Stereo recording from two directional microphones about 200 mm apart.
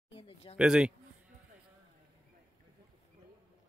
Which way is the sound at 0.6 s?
5° right (ahead or behind).